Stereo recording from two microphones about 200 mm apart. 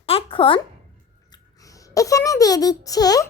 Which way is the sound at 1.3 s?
15° left (ahead or behind).